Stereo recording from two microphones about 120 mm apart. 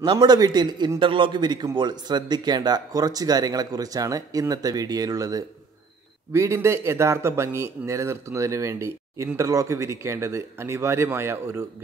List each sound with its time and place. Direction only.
0.0 s a man's voice: 40° right (ahead or behind); by 11.6 s 20° right (ahead or behind)